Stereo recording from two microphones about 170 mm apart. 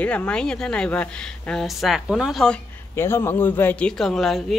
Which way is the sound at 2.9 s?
15° left (ahead or behind).